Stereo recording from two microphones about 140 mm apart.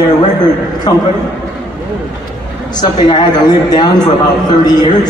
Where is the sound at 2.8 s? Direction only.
35° left (ahead or behind).